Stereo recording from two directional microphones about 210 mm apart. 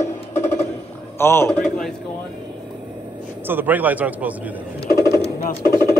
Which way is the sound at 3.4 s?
10° right (ahead or behind).